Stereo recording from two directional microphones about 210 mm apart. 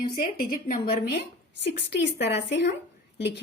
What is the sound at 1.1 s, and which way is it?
A woman's voice, 55° left (ahead or behind).